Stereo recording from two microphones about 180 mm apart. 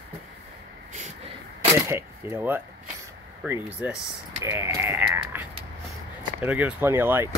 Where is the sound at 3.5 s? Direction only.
10° right (ahead or behind).